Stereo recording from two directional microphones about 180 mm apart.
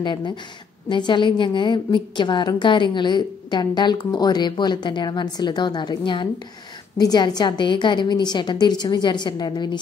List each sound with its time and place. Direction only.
0.0 s a woman's voice: 25° left (ahead or behind)